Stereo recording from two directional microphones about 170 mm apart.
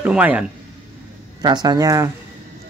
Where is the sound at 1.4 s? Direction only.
25° right (ahead or behind).